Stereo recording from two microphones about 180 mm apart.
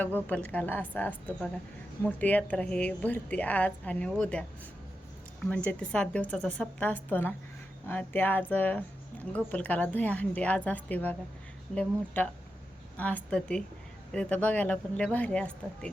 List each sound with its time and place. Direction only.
0.0 s a woman's voice: 10° left (ahead or behind)